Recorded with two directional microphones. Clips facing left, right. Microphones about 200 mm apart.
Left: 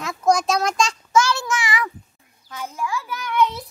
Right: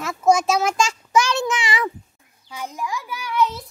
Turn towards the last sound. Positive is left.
turn(degrees=-5)  # may be behind; listen again after turning